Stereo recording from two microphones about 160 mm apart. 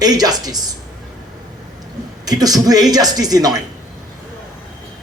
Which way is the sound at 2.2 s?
25° right (ahead or behind).